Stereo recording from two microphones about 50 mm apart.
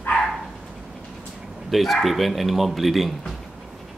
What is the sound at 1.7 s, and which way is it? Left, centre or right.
Speech, centre.